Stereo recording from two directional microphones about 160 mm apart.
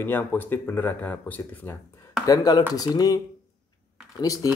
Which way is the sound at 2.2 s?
25° left (ahead or behind).